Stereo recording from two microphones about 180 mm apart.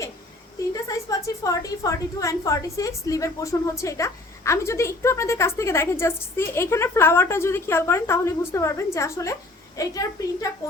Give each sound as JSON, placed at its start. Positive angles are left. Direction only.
{"t": 0.9, "sound": "a woman's voice", "side_deg": 20}